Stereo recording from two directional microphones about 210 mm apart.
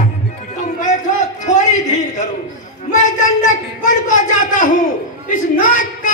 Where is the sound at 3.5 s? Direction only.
35° left (ahead or behind).